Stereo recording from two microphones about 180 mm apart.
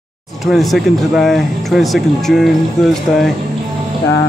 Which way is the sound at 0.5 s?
Centre (ahead or behind).